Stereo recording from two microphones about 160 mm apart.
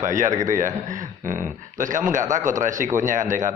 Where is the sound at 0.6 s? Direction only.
50° right (ahead or behind).